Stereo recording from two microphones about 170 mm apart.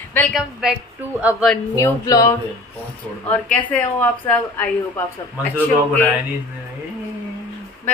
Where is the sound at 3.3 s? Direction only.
10° left (ahead or behind).